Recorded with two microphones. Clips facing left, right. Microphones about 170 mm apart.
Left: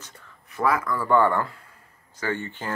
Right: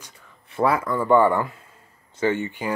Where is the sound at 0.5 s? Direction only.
30° right (ahead or behind).